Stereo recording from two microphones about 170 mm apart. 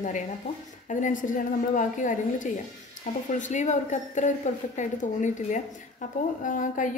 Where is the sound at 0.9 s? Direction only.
50° left (ahead or behind).